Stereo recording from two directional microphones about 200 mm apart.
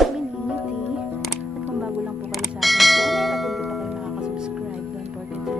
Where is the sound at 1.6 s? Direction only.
5° right (ahead or behind).